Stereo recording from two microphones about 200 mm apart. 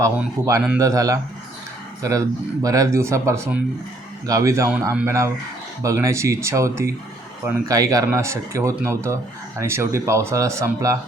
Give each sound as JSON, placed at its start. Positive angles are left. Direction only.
{"t": 0.4, "sound": "speech", "side_deg": -15}